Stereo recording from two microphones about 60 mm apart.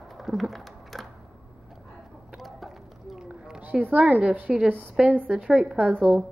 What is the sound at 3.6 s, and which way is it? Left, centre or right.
A woman's voice, right.